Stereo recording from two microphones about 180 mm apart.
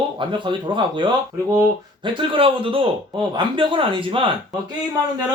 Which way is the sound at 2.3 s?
30° right (ahead or behind).